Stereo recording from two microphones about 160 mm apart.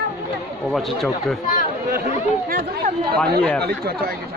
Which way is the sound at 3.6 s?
70° right (ahead or behind).